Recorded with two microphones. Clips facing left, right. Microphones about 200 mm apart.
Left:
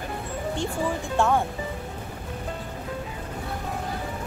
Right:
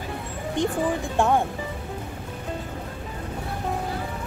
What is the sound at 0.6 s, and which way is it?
Speech, 15° right (ahead or behind).